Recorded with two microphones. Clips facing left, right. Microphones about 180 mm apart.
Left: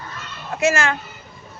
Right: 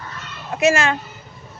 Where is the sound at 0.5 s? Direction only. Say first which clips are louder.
Right 2 dB; 20° right (ahead or behind).